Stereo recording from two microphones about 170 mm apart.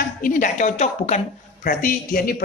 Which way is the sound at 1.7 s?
55° left (ahead or behind).